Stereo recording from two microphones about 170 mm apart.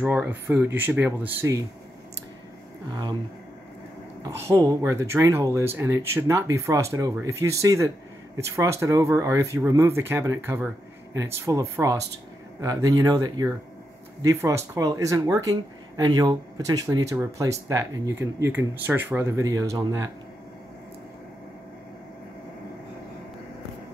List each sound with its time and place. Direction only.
0.0 s speech: 10° right (ahead or behind)
2.9 s speech: 25° right (ahead or behind)
4.2 s speech: 15° right (ahead or behind)